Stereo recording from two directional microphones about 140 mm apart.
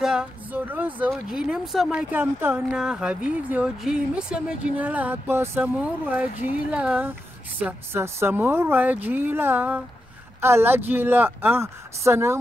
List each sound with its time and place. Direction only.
0.0 s music: 5° right (ahead or behind)
1.1 s speech: 5° right (ahead or behind); by 12.4 s 20° right (ahead or behind)